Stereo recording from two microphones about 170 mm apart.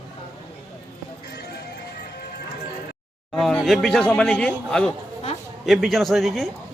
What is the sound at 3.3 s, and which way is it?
Speech, 5° left (ahead or behind).